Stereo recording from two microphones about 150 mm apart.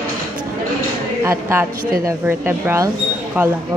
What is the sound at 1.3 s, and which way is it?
A woman's voice, 20° right (ahead or behind).